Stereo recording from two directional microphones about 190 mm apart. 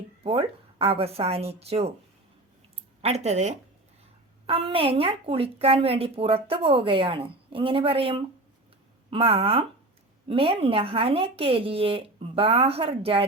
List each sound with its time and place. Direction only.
0.2 s a woman's voice: 30° right (ahead or behind)
3.0 s a woman's voice: 35° right (ahead or behind)